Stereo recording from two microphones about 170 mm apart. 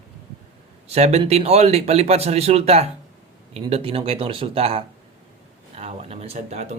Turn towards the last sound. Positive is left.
turn(degrees=-40)  # may be behind; listen again after turning